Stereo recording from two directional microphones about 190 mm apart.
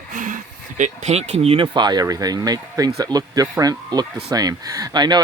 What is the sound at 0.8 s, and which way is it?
Speech, 35° right (ahead or behind).